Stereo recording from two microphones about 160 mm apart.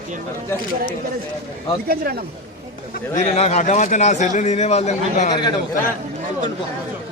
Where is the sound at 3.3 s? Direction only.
45° left (ahead or behind).